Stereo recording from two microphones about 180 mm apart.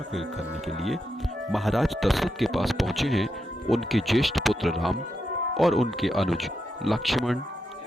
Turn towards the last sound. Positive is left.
turn(degrees=0)  # may be behind; listen again after turning